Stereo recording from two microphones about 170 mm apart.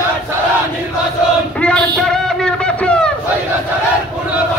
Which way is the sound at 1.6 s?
5° left (ahead or behind).